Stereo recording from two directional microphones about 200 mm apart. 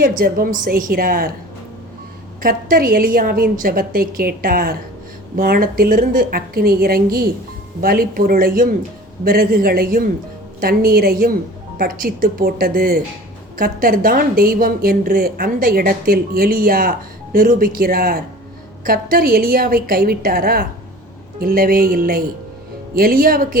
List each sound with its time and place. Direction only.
0.0 s speech: 45° right (ahead or behind)
2.4 s speech: 45° right (ahead or behind)